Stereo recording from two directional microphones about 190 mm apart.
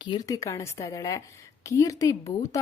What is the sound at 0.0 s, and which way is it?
A woman's voice, 20° left (ahead or behind).